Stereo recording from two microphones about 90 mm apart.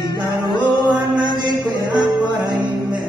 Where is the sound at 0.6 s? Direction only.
55° right (ahead or behind).